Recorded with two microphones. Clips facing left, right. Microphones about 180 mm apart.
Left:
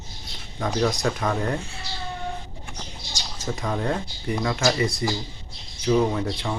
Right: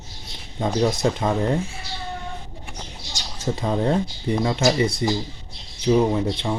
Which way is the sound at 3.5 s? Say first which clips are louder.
Right 5 dB; 25° right (ahead or behind).